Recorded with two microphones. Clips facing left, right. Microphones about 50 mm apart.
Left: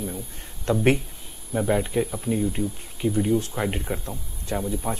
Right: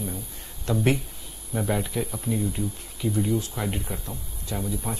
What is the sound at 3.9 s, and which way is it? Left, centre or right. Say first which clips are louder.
Speech: left 5 dB; left.